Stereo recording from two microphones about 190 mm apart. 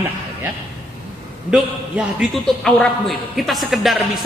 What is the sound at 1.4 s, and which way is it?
A man's voice, 5° right (ahead or behind).